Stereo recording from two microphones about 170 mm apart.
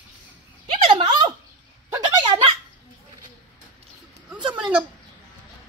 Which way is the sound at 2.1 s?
25° right (ahead or behind).